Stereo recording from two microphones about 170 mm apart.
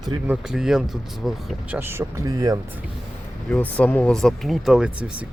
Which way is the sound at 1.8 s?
15° right (ahead or behind).